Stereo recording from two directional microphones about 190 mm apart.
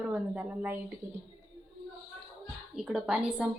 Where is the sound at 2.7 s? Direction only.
5° right (ahead or behind).